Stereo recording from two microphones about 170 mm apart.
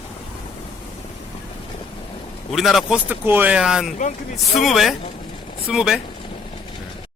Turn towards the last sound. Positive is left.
turn(degrees=0)  # may be behind; listen again after turning